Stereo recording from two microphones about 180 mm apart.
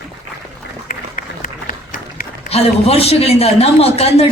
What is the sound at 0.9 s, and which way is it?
Run, 50° left (ahead or behind).